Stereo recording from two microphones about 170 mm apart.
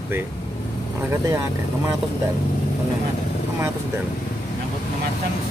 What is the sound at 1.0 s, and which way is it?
Speech, 15° right (ahead or behind).